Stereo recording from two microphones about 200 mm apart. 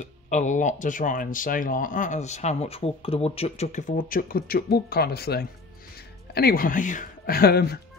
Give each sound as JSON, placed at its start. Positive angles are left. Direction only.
{"t": 0.0, "sound": "speech", "side_deg": 35}